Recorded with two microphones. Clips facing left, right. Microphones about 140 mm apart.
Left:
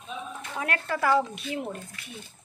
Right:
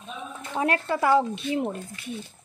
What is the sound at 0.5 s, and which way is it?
Speech, 30° right (ahead or behind).